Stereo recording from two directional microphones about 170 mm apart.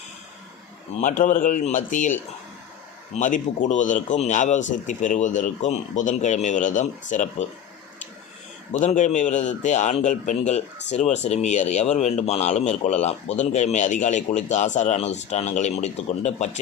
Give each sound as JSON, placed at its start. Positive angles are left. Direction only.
{"t": 1.0, "sound": "speech", "side_deg": 50}
{"t": 8.8, "sound": "speech", "side_deg": 45}